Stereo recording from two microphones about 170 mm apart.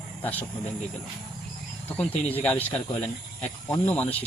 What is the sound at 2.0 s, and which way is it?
Speech, 10° left (ahead or behind).